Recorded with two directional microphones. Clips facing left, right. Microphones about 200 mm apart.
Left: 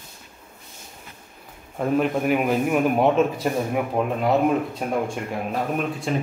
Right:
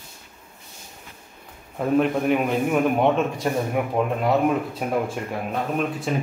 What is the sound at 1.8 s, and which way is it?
Speech, centre (ahead or behind).